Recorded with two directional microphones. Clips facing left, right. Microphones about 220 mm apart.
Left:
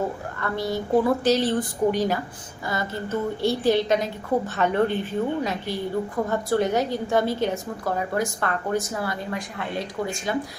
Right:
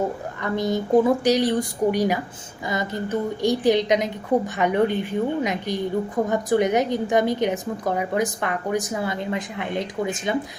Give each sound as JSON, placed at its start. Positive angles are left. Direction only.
{"t": 0.3, "sound": "a woman's voice", "side_deg": -20}